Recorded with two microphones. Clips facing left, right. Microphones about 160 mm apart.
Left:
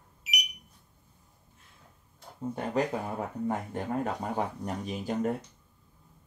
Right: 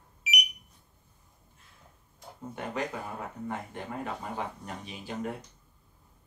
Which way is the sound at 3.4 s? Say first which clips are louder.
Left 6 dB; 40° left (ahead or behind).